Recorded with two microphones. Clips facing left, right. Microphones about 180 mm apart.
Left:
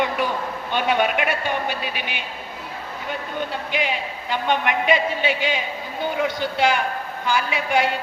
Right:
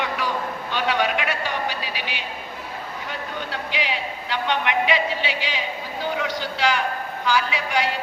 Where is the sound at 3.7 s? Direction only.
50° left (ahead or behind).